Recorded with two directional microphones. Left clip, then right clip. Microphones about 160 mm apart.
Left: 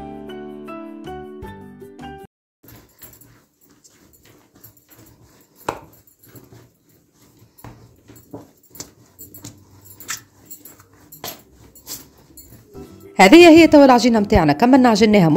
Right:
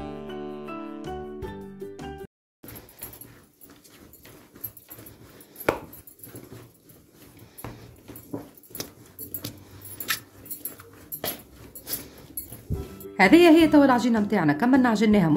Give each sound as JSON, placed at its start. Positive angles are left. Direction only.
{"t": 0.0, "sound": "music", "side_deg": 0}
{"t": 8.8, "sound": "dog", "side_deg": -5}
{"t": 10.1, "sound": "a sound", "side_deg": -5}
{"t": 13.1, "sound": "a woman's voice", "side_deg": 50}